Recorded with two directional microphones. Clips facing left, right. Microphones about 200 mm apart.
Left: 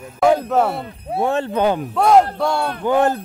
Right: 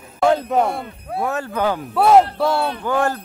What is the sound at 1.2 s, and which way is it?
Speech, 25° left (ahead or behind).